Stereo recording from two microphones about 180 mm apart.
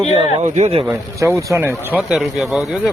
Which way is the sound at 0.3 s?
40° right (ahead or behind).